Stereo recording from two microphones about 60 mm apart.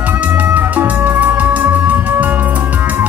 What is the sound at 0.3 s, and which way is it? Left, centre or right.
Music, right.